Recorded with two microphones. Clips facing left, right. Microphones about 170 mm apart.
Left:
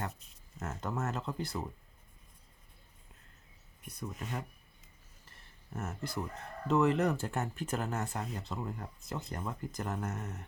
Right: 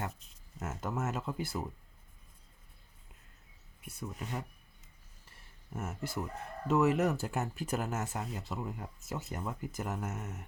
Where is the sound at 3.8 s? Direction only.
5° right (ahead or behind).